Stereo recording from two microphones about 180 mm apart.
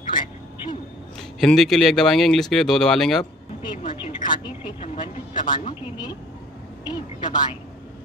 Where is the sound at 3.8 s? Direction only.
30° left (ahead or behind).